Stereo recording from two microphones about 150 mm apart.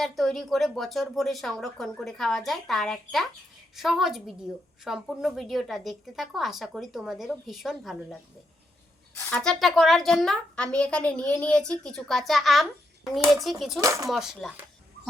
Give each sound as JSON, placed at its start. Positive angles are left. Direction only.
{"t": 0.0, "sound": "a woman's voice", "side_deg": 0}
{"t": 13.8, "sound": "speech", "side_deg": -20}
{"t": 14.1, "sound": "a woman's voice", "side_deg": 0}